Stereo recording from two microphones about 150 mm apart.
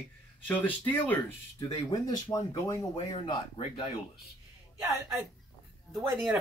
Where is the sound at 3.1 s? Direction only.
35° left (ahead or behind).